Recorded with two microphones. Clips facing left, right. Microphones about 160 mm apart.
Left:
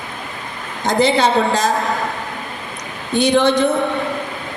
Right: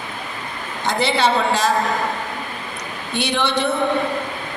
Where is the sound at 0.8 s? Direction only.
45° left (ahead or behind).